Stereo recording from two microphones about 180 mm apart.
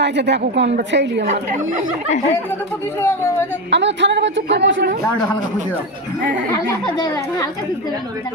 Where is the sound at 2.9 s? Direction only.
15° left (ahead or behind).